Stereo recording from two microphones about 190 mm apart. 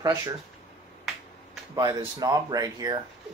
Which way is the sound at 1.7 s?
20° right (ahead or behind).